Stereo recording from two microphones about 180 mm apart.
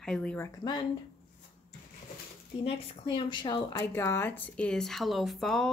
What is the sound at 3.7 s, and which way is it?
Speech, 15° left (ahead or behind).